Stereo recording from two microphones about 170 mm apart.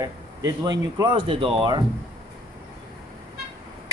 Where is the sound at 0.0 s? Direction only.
20° right (ahead or behind).